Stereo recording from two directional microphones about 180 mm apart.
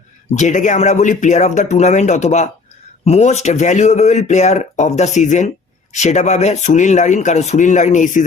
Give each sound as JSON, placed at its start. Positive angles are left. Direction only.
{"t": 0.3, "sound": "speech", "side_deg": 45}